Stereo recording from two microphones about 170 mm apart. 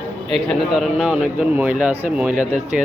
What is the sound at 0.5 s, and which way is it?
A man's voice, centre (ahead or behind).